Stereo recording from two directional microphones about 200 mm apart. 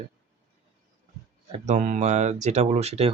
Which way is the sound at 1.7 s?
40° right (ahead or behind).